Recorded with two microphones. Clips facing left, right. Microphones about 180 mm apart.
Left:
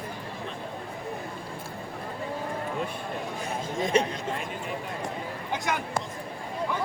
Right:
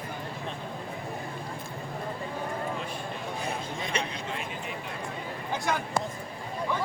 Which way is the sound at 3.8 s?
45° left (ahead or behind).